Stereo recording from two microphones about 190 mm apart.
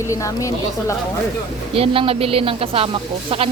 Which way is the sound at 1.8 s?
30° right (ahead or behind).